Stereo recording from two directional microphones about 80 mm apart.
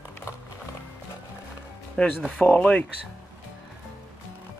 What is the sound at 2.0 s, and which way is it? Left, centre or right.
Speech, centre.